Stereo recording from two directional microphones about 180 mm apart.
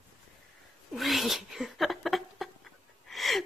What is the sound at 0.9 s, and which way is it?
Cat, centre (ahead or behind).